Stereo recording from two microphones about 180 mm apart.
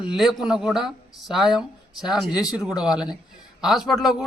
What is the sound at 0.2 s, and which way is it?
Speech, 5° right (ahead or behind).